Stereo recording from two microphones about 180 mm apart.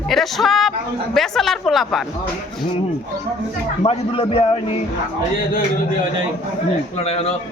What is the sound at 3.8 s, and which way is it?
Speech, 30° left (ahead or behind).